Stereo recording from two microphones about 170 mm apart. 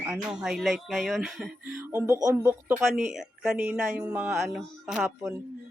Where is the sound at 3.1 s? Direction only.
5° right (ahead or behind).